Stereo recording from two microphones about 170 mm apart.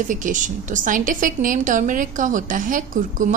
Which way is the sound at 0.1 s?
50° right (ahead or behind).